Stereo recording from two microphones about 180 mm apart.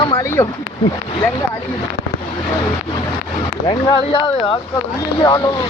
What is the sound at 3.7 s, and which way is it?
Speech, 25° left (ahead or behind).